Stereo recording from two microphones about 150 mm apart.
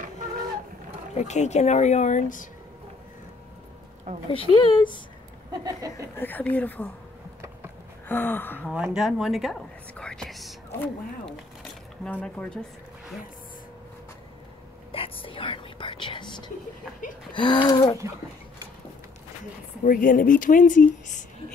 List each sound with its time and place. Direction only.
1.1 s speech: 50° left (ahead or behind)
4.3 s a sound: 35° left (ahead or behind)
5.6 s a sound: 20° right (ahead or behind)
6.1 s speech: 10° left (ahead or behind)
8.1 s speech: 15° left (ahead or behind)
8.8 s a woman's voice: 5° right (ahead or behind)
14.9 s whispering: 35° left (ahead or behind)
17.3 s a sound: 35° left (ahead or behind)
19.8 s speech: 65° left (ahead or behind)